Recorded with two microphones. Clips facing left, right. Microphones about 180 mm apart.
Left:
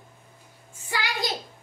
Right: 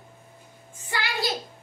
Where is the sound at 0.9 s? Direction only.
15° left (ahead or behind).